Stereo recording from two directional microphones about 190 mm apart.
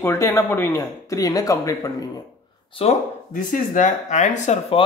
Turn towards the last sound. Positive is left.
turn(degrees=35)  # may be behind; listen again after turning